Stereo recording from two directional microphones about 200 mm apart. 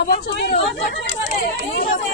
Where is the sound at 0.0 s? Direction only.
55° left (ahead or behind).